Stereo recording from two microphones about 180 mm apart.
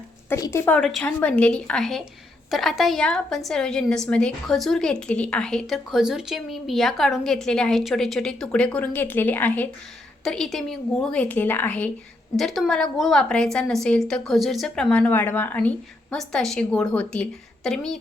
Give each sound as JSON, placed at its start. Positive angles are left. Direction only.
{"t": 0.3, "sound": "a woman's voice", "side_deg": 15}
{"t": 0.8, "sound": "a woman's voice", "side_deg": 0}